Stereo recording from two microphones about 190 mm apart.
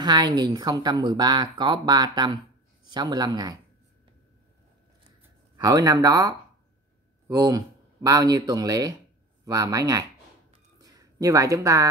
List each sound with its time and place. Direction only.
0.0 s speech: 20° right (ahead or behind)
5.6 s speech: 20° right (ahead or behind)